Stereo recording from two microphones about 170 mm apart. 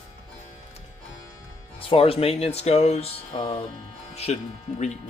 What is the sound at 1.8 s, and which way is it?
Speech, 35° left (ahead or behind).